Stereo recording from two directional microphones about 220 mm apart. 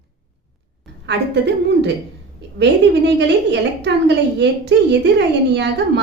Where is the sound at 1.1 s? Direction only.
50° right (ahead or behind).